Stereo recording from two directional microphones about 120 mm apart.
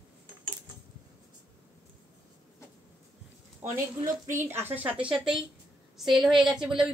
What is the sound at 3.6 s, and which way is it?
A woman's voice, 20° right (ahead or behind).